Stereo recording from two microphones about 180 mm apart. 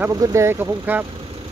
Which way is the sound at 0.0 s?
20° right (ahead or behind).